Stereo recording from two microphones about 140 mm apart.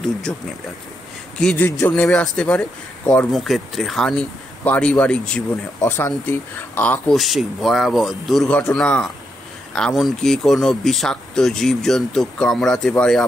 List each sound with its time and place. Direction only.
0.3 s speech: 10° left (ahead or behind)
7.2 s speech: centre (ahead or behind)